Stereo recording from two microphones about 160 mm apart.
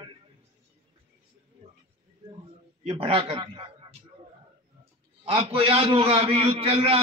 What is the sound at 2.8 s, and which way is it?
Speech, 35° right (ahead or behind).